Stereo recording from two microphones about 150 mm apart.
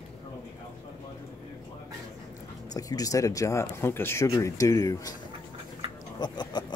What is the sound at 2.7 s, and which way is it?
Speech, 25° left (ahead or behind).